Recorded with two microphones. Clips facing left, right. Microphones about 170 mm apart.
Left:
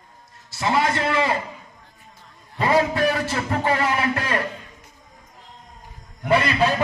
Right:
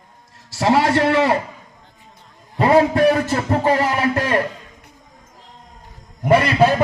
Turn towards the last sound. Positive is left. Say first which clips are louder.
# right 5 dB
turn(degrees=-45)  # may be behind; listen again after turning